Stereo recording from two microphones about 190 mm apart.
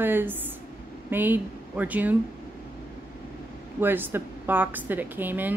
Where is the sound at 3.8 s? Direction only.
10° right (ahead or behind).